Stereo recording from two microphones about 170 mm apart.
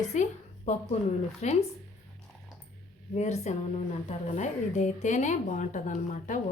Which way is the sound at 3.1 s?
40° left (ahead or behind).